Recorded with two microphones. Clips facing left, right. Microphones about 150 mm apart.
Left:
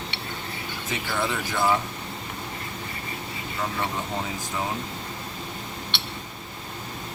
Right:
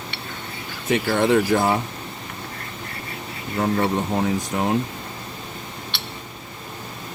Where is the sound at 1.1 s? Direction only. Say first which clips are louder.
Right 10 dB; 60° right (ahead or behind).